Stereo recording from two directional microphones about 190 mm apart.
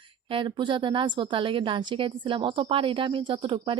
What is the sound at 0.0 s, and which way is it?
A woman's voice, 25° right (ahead or behind).